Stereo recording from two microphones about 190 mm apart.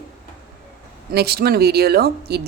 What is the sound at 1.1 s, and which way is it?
A woman's voice, 55° right (ahead or behind).